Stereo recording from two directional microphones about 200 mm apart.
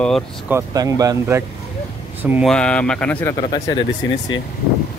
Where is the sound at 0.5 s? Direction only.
15° right (ahead or behind).